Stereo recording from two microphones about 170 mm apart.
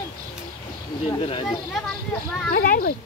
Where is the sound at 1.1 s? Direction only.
30° left (ahead or behind).